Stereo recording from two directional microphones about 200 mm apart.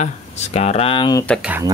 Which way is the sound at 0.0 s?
35° left (ahead or behind).